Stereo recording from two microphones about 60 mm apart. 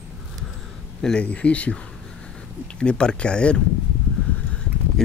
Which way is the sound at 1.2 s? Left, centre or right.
Left.